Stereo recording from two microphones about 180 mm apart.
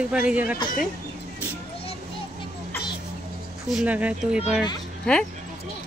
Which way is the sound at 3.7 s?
5° right (ahead or behind).